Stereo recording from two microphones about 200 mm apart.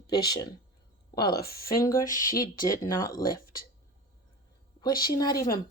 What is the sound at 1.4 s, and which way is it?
Speech, 45° left (ahead or behind).